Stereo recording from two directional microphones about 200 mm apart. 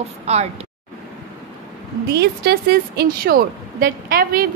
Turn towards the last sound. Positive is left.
turn(degrees=-45)  # may be behind; listen again after turning